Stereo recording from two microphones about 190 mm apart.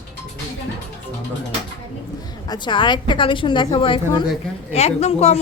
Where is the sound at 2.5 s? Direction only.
25° left (ahead or behind).